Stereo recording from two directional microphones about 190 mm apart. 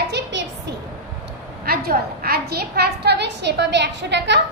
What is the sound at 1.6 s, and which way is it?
A woman's voice, 55° right (ahead or behind).